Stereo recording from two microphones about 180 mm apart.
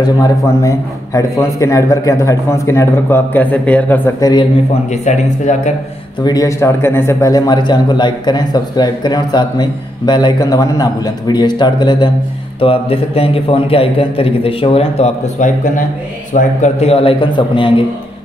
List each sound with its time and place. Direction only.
0.6 s a man's voice: 15° left (ahead or behind)
4.9 s a man's voice: 40° left (ahead or behind)
6.2 s a man's voice: 20° left (ahead or behind)